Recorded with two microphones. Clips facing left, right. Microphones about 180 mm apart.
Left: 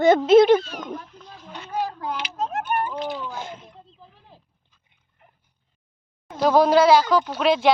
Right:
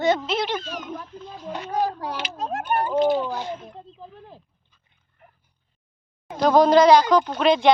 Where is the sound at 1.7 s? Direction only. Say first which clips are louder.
Right 1 dB; 35° right (ahead or behind).